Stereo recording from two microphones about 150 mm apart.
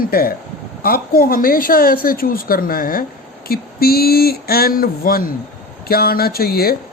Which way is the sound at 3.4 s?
90° left.